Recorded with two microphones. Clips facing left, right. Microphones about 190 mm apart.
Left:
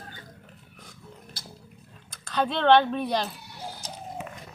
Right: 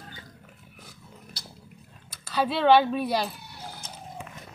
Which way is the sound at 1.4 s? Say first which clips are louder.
Left 1 dB; 50° left (ahead or behind).